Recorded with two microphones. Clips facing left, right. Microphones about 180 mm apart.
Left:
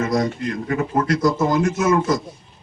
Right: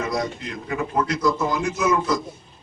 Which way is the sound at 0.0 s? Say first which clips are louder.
Left 5 dB; 45° left (ahead or behind).